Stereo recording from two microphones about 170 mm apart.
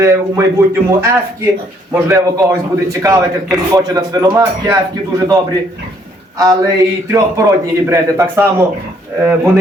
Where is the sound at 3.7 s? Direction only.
20° right (ahead or behind).